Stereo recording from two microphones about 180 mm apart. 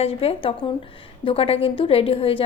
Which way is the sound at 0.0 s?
35° left (ahead or behind).